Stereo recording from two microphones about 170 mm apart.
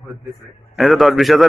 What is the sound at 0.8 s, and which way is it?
Speech, centre (ahead or behind).